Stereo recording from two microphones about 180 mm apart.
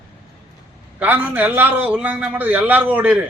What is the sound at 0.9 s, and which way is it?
A man's voice, 10° right (ahead or behind).